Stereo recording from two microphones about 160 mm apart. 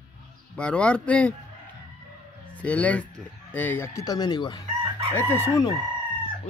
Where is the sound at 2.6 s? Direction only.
10° left (ahead or behind).